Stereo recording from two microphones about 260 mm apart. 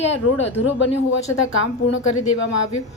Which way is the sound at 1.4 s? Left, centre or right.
Left.